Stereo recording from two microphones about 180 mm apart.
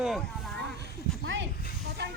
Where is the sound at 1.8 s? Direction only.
70° right (ahead or behind).